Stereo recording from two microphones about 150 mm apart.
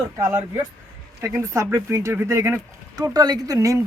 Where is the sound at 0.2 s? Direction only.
20° right (ahead or behind).